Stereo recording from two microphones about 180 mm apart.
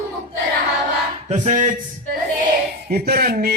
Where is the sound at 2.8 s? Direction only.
60° right (ahead or behind).